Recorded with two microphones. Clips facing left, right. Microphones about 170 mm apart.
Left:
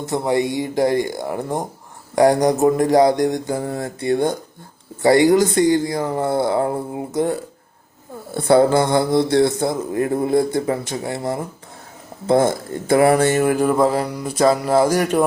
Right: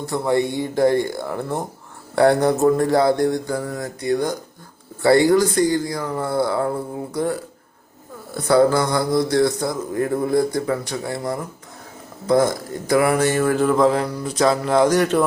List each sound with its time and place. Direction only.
0.0 s speech: 20° left (ahead or behind)